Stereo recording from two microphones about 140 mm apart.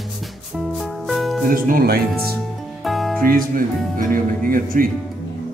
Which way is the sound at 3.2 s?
90° right.